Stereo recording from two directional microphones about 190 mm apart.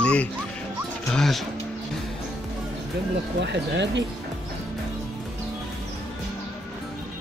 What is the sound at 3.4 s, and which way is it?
Speech, 65° right (ahead or behind).